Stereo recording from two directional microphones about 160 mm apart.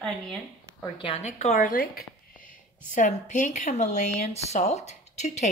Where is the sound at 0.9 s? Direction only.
30° left (ahead or behind).